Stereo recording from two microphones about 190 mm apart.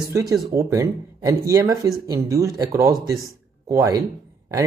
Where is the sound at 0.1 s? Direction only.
20° right (ahead or behind).